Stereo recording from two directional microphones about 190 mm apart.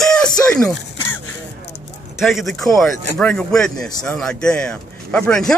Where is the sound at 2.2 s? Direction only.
Centre (ahead or behind).